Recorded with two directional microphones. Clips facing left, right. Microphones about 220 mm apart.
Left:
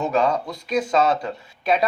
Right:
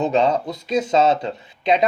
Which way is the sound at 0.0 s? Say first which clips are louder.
Right 3 dB; 20° right (ahead or behind).